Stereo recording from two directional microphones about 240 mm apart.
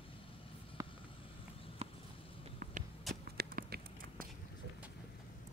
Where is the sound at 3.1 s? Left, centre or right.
Right.